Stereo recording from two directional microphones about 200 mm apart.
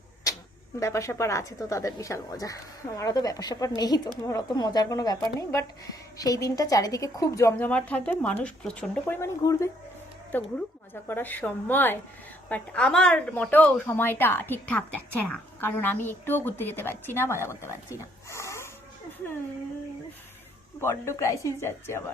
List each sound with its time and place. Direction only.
0.8 s a woman's voice: 15° left (ahead or behind)
18.3 s a sound: 15° left (ahead or behind)
20.8 s a woman's voice: 15° left (ahead or behind)